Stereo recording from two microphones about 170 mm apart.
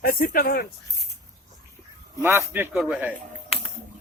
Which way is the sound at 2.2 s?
15° right (ahead or behind).